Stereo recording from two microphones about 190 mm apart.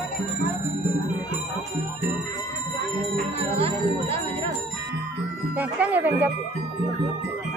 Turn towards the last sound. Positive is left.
turn(degrees=-10)  # may be behind; listen again after turning